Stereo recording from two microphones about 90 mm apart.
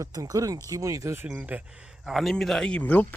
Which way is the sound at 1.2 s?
15° right (ahead or behind).